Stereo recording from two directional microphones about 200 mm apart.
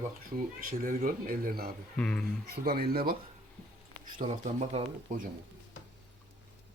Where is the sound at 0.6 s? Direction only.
45° right (ahead or behind).